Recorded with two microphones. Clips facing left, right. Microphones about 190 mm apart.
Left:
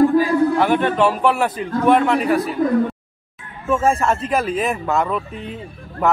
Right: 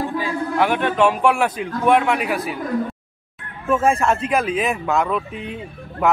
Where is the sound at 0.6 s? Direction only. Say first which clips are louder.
Left 1 dB; 5° right (ahead or behind).